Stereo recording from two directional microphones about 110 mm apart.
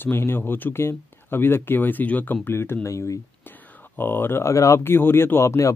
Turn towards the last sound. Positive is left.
turn(degrees=25)  # may be behind; listen again after turning